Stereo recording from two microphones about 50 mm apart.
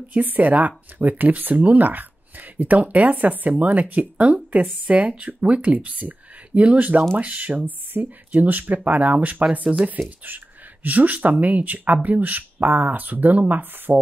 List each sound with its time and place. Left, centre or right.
0.1 s speech: right